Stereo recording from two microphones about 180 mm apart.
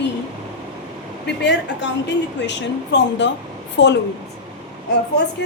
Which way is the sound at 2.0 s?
75° left (ahead or behind).